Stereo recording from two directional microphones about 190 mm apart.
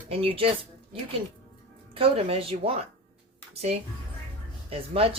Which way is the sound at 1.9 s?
30° right (ahead or behind).